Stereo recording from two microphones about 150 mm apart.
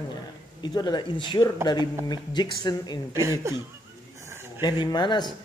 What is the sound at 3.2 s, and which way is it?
Speech, 20° right (ahead or behind).